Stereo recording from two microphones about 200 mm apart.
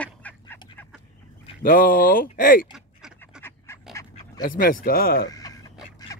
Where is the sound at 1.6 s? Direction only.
45° left (ahead or behind).